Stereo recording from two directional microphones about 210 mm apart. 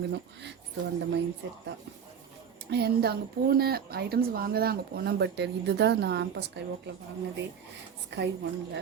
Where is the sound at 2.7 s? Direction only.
50° right (ahead or behind).